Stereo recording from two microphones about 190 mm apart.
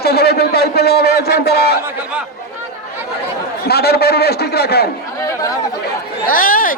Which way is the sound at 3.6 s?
55° left (ahead or behind).